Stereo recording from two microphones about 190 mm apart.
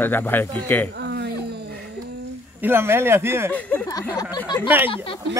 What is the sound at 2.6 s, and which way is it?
Speech, 10° right (ahead or behind).